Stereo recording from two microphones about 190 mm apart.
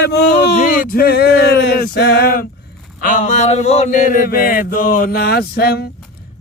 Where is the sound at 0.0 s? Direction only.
55° left (ahead or behind).